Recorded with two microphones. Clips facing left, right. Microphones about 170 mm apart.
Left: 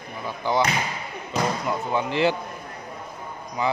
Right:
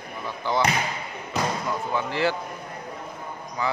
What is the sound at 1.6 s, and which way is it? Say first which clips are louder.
Speech: left 2 dB; 20° left (ahead or behind).